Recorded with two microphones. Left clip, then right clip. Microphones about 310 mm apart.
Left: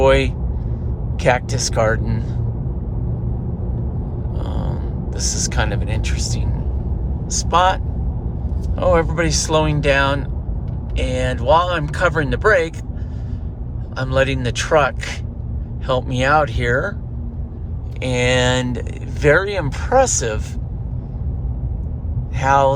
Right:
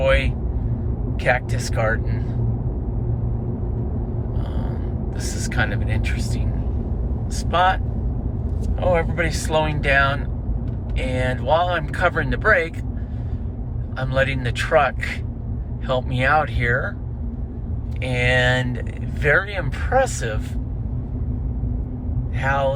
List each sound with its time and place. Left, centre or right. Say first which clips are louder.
0.0 s speech: left 5 dB; centre
4.4 s a sound: left 3 dB; centre
5.2 s speech: left 3 dB; centre
8.8 s speech: left 4 dB; centre
13.9 s speech: left 3 dB; centre
18.0 s speech: left 2 dB; centre
22.4 s speech: left 7 dB; centre